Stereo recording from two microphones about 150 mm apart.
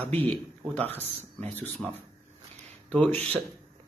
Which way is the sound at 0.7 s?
10° left (ahead or behind).